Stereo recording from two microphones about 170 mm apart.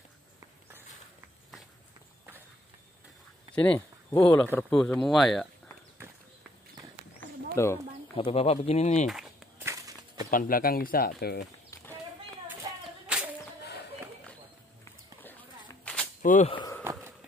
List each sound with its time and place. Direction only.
3.5 s speech: 10° left (ahead or behind)
7.5 s speech: 15° left (ahead or behind)
8.2 s speech: 35° left (ahead or behind)
9.0 s a sound: centre (ahead or behind)
9.7 s walk: 20° right (ahead or behind)
10.3 s speech: 55° left (ahead or behind)
13.0 s whip: 5° right (ahead or behind)
15.2 s a sound: 10° left (ahead or behind)
16.2 s speech: 50° left (ahead or behind)
16.4 s speech: 30° left (ahead or behind)